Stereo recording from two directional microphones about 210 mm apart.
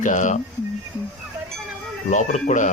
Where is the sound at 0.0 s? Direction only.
35° left (ahead or behind).